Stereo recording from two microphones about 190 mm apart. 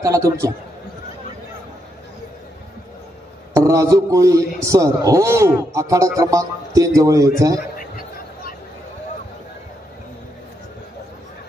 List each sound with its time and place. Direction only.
0.0 s a man's voice: 15° right (ahead or behind)
3.5 s a man's voice: 15° right (ahead or behind)